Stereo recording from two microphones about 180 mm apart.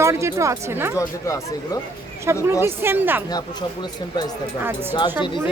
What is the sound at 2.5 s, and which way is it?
Speech, 15° right (ahead or behind).